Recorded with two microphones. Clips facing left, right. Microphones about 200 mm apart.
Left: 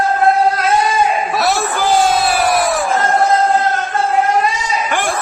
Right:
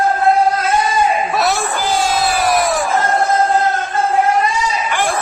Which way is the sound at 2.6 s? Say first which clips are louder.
Even; centre (ahead or behind).